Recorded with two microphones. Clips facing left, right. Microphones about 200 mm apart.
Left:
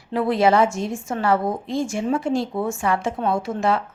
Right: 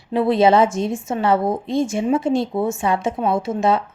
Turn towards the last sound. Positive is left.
turn(degrees=-20)  # may be behind; listen again after turning